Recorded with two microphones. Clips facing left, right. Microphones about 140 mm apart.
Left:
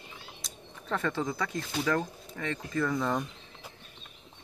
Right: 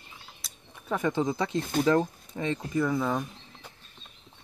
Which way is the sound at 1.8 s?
25° right (ahead or behind).